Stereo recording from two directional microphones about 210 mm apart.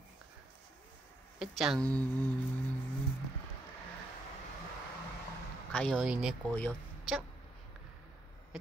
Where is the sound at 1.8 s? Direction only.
15° right (ahead or behind).